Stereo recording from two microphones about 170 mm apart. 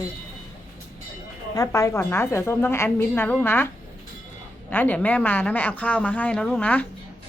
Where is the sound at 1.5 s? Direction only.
20° left (ahead or behind).